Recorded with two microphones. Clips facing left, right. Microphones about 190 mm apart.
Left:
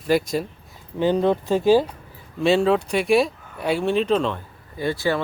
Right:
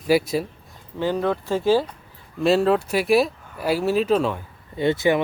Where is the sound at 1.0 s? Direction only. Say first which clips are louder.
Left 3 dB; 20° left (ahead or behind).